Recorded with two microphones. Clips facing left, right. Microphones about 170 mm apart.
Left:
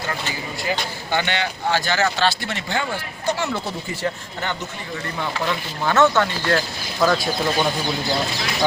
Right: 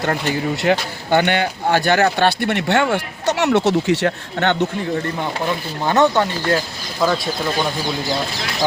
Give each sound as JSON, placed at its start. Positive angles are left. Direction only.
{"t": 0.0, "sound": "speech", "side_deg": -60}
{"t": 5.5, "sound": "speech", "side_deg": -15}
{"t": 7.0, "sound": "speech", "side_deg": -5}